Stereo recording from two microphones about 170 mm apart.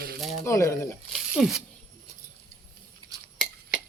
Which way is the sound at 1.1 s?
5° right (ahead or behind).